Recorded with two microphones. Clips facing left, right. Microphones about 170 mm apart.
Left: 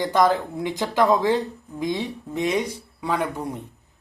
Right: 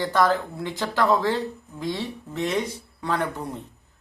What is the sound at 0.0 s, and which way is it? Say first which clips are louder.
Speech: left 2 dB; 15° left (ahead or behind).